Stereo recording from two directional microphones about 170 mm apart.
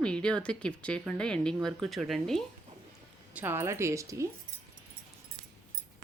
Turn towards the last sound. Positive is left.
turn(degrees=-20)  # may be behind; listen again after turning